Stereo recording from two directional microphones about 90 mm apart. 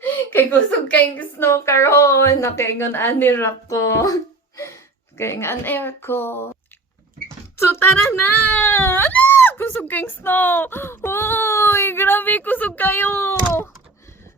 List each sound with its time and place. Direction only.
0.0 s a woman's voice: 20° left (ahead or behind)
7.6 s speech: 25° left (ahead or behind)